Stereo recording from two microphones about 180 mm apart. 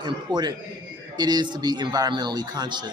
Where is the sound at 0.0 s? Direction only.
25° right (ahead or behind).